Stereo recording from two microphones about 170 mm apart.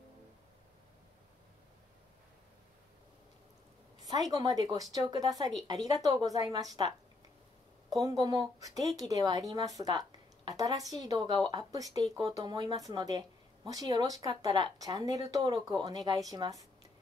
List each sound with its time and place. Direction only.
4.3 s speech: 20° right (ahead or behind)
7.9 s speech: 20° right (ahead or behind)